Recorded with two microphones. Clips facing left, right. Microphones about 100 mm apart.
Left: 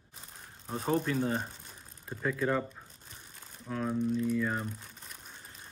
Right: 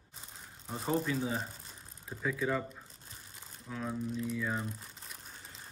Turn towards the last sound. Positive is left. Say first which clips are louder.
# left 1 dB
turn(degrees=0)  # may be behind; listen again after turning